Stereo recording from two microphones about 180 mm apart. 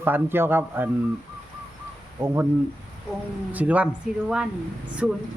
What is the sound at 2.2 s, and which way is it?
Speech, 10° right (ahead or behind).